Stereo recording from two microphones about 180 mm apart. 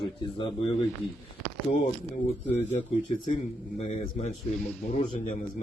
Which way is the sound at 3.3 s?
40° left (ahead or behind).